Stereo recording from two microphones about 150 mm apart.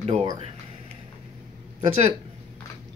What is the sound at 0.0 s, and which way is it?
Speech, 40° right (ahead or behind).